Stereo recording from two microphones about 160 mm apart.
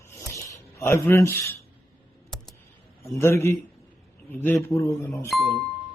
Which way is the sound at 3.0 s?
15° left (ahead or behind).